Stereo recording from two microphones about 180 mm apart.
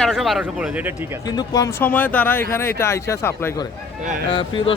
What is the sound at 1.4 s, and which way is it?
Speech, 20° left (ahead or behind).